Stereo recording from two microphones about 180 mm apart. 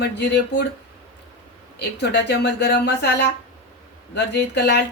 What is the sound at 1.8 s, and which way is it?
Speech, 70° left (ahead or behind).